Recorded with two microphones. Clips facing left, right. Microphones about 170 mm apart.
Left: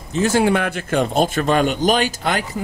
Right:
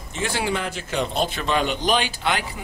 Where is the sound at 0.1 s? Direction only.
45° left (ahead or behind).